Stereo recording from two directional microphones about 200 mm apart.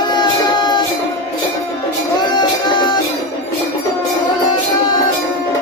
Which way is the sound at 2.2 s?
20° left (ahead or behind).